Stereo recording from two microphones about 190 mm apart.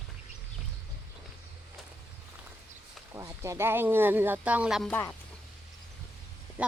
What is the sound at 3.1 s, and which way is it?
Speech, 15° right (ahead or behind).